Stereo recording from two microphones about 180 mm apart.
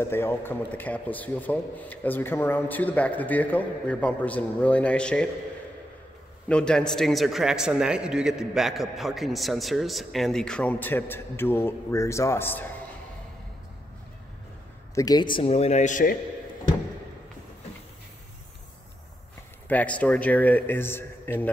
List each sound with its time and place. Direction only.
0.0 s a man's voice: 15° left (ahead or behind)
6.5 s a man's voice: 5° left (ahead or behind)
15.0 s a man's voice: 20° left (ahead or behind); by 16.2 s 45° left (ahead or behind)
19.7 s a man's voice: 10° left (ahead or behind)